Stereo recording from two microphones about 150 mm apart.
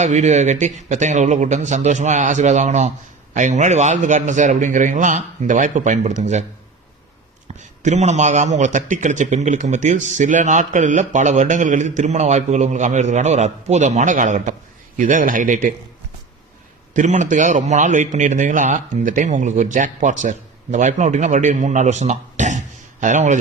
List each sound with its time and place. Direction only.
0.0 s a man's voice: 50° right (ahead or behind)
7.6 s a man's voice: 55° right (ahead or behind)
16.9 s a man's voice: 55° right (ahead or behind)